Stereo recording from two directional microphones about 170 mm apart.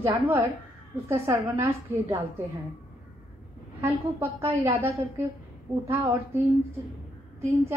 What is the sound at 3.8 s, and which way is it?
A woman's voice, 15° right (ahead or behind).